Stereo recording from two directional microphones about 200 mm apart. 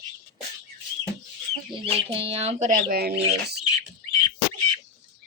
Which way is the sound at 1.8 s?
30° right (ahead or behind).